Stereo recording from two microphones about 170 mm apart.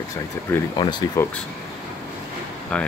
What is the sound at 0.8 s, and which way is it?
Speech, 25° left (ahead or behind).